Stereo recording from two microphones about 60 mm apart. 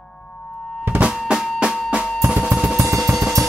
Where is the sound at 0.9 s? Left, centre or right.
Centre.